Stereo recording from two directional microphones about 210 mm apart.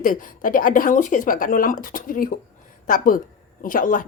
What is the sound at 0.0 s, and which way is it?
Speech, 40° left (ahead or behind).